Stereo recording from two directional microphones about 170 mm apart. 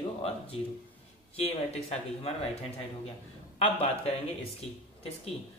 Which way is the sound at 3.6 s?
35° left (ahead or behind).